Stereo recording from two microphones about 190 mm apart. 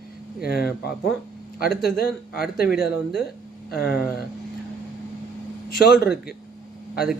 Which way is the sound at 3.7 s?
55° left (ahead or behind).